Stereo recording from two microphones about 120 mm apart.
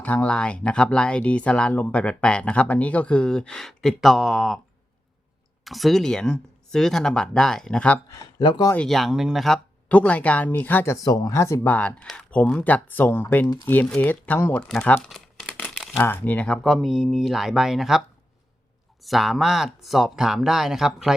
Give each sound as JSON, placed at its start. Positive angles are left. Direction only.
{"t": 0.0, "sound": "speech", "side_deg": 10}
{"t": 5.6, "sound": "speech", "side_deg": 0}
{"t": 8.1, "sound": "speech", "side_deg": 35}
{"t": 8.9, "sound": "speech", "side_deg": 0}
{"t": 9.9, "sound": "speech", "side_deg": 10}
{"t": 10.9, "sound": "speech", "side_deg": 30}
{"t": 11.7, "sound": "speech", "side_deg": 10}
{"t": 15.1, "sound": "crumpling", "side_deg": 0}
{"t": 16.0, "sound": "speech", "side_deg": 20}
{"t": 16.6, "sound": "speech", "side_deg": 0}
{"t": 19.0, "sound": "speech", "side_deg": 0}